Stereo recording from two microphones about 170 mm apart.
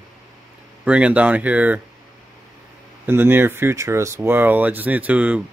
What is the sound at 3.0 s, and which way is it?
Speech, 15° right (ahead or behind).